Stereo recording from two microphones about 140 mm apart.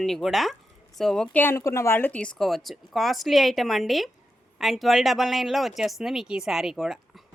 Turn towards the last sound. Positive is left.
turn(degrees=0)  # may be behind; listen again after turning